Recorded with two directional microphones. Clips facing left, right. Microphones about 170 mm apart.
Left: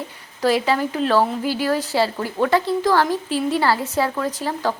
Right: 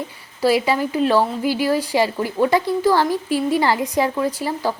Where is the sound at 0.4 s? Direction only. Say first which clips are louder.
Right 1 dB; 10° right (ahead or behind).